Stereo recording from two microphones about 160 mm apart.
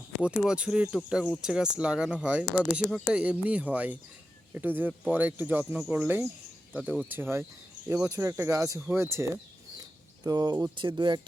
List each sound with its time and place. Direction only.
0.2 s speech: 5° right (ahead or behind)
8.1 s speech: 20° right (ahead or behind)